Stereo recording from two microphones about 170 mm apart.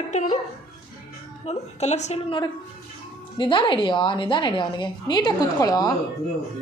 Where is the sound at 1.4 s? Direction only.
40° left (ahead or behind).